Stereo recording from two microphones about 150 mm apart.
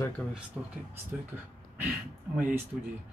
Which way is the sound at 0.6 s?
Centre (ahead or behind).